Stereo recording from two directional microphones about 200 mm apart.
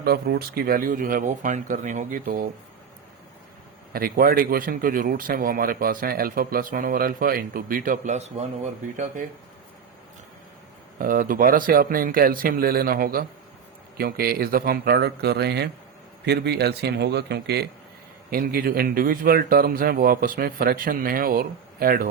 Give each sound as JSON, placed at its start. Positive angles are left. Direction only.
{"t": 0.0, "sound": "speech", "side_deg": -55}
{"t": 3.9, "sound": "speech", "side_deg": -45}
{"t": 10.9, "sound": "speech", "side_deg": -45}